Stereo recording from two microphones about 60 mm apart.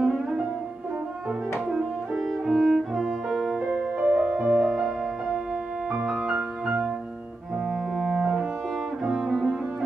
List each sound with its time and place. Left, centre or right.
0.0 s music: centre
2.4 s cello: centre
3.7 s music: right
4.6 s music: centre
6.0 s music: centre
8.2 s music: centre
9.0 s cello: centre